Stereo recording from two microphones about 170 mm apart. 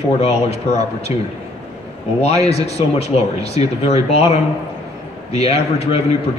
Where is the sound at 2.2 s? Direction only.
40° left (ahead or behind).